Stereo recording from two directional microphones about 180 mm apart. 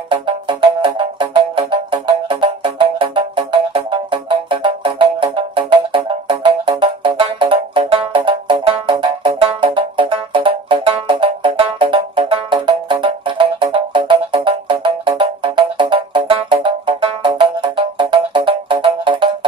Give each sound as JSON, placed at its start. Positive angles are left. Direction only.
{"t": 0.1, "sound": "music", "side_deg": -25}